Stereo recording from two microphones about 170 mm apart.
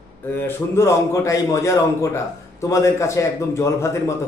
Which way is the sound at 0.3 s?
15° left (ahead or behind).